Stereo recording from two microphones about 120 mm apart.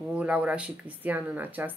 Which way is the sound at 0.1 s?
10° right (ahead or behind).